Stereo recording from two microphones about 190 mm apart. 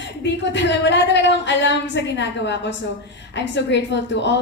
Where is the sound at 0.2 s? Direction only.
70° left (ahead or behind).